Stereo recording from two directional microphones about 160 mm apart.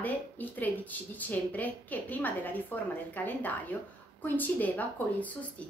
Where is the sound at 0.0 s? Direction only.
10° left (ahead or behind).